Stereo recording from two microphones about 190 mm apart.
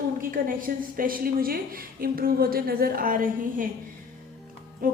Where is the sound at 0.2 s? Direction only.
45° right (ahead or behind).